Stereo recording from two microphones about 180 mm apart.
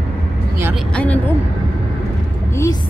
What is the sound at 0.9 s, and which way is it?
Speech, 5° left (ahead or behind).